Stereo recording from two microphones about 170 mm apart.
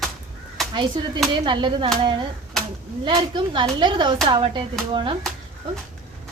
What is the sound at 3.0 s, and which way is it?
Speech, 30° right (ahead or behind).